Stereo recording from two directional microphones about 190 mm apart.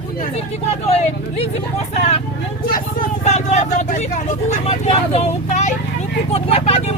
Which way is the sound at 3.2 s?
35° left (ahead or behind).